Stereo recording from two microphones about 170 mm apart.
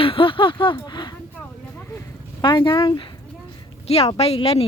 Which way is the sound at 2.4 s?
25° left (ahead or behind).